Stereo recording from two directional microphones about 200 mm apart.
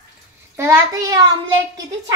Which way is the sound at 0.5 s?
15° right (ahead or behind).